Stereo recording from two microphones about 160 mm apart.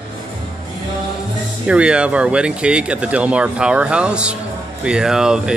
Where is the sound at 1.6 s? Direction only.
5° right (ahead or behind).